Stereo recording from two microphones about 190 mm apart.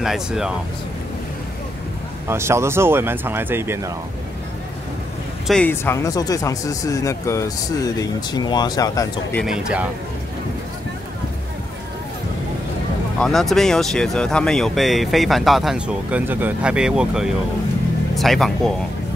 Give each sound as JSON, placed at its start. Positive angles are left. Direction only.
{"t": 0.0, "sound": "speech", "side_deg": 0}
{"t": 2.2, "sound": "speech", "side_deg": -15}
{"t": 5.5, "sound": "speech", "side_deg": 10}
{"t": 9.3, "sound": "speech", "side_deg": 0}
{"t": 13.2, "sound": "speech", "side_deg": 0}